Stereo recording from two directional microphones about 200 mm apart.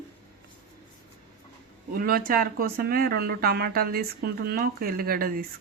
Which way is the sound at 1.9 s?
45° right (ahead or behind).